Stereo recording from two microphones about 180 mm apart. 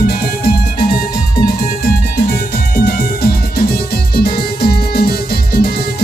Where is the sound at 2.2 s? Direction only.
65° left (ahead or behind).